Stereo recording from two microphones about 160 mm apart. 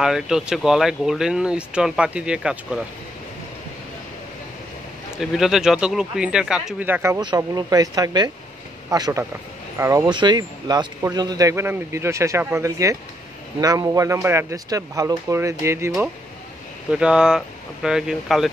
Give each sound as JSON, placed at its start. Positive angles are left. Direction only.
{"t": 0.0, "sound": "speech", "side_deg": -5}
{"t": 5.1, "sound": "speech", "side_deg": -5}
{"t": 16.9, "sound": "speech", "side_deg": -5}